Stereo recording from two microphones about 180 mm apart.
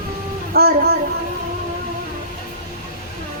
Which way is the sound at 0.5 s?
60° right (ahead or behind).